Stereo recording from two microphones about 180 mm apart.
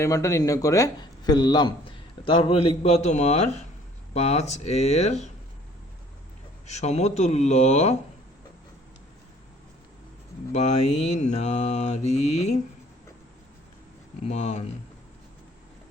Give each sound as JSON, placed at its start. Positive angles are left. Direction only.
{"t": 0.0, "sound": "a man's voice", "side_deg": 15}
{"t": 4.1, "sound": "mantra", "side_deg": 35}
{"t": 6.7, "sound": "mantra", "side_deg": 40}
{"t": 10.5, "sound": "mantra", "side_deg": 40}
{"t": 14.3, "sound": "mantra", "side_deg": 40}